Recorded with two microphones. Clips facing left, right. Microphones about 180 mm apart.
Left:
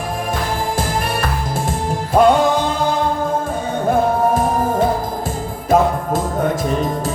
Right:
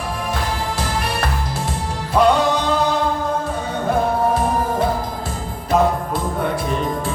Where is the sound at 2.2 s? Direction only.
50° left (ahead or behind).